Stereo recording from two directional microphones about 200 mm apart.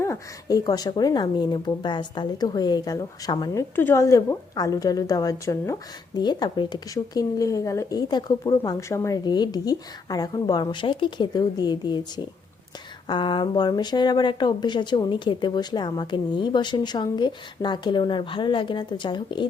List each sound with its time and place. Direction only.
0.0 s speech: 15° left (ahead or behind)